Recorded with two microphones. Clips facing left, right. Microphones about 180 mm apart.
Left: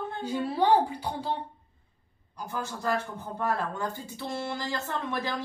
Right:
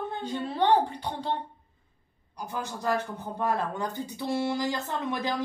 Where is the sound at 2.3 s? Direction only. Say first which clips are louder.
Even; 15° right (ahead or behind).